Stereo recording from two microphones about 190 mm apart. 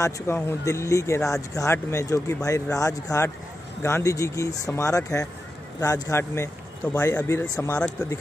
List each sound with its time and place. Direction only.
0.0 s speech: 15° left (ahead or behind)